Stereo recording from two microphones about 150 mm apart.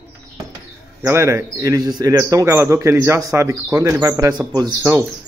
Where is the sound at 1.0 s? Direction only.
20° right (ahead or behind).